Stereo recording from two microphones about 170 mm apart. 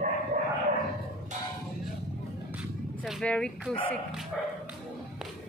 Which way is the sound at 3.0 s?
5° left (ahead or behind).